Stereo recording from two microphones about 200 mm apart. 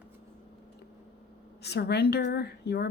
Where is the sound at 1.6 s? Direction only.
55° left (ahead or behind).